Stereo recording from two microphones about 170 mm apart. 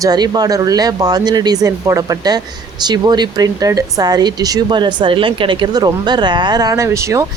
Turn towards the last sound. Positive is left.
turn(degrees=-15)  # may be behind; listen again after turning